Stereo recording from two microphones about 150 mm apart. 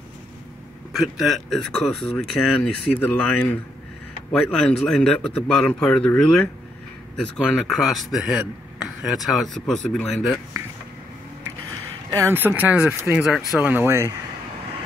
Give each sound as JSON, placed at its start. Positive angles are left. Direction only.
{"t": 0.9, "sound": "a man's voice", "side_deg": 0}
{"t": 12.1, "sound": "speech", "side_deg": -15}